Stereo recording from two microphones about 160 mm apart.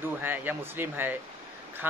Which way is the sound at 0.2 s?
15° right (ahead or behind).